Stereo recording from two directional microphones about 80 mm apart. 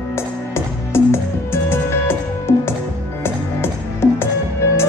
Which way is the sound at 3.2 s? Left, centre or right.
Left.